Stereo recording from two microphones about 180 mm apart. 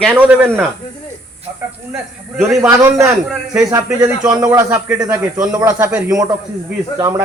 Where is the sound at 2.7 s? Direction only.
15° right (ahead or behind).